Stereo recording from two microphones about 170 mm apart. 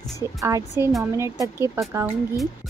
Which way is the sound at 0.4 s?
20° right (ahead or behind).